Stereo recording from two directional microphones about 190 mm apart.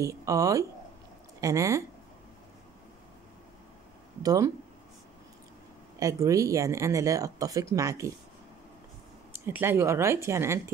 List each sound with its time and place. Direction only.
0.0 s speech: 15° right (ahead or behind)
4.2 s speech: 20° right (ahead or behind)
5.9 s speech: 15° right (ahead or behind)
9.3 s speech: 10° right (ahead or behind)